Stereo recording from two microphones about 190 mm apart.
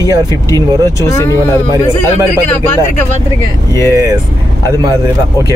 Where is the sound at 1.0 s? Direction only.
15° left (ahead or behind).